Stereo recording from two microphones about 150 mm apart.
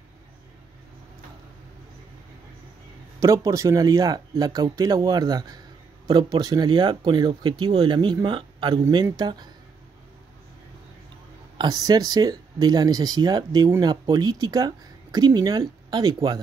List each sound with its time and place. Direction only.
3.2 s speech: 20° right (ahead or behind)
11.5 s speech: 25° right (ahead or behind)